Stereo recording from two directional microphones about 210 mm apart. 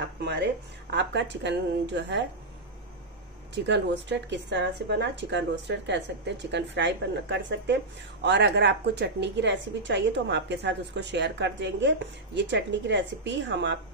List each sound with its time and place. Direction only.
0.0 s speech: 55° right (ahead or behind)
3.6 s speech: 55° right (ahead or behind)